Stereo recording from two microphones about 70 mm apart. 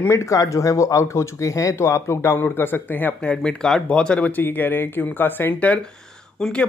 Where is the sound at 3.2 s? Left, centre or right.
Centre.